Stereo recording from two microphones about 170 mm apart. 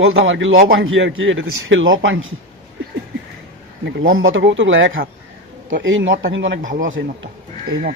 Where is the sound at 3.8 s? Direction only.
90° right.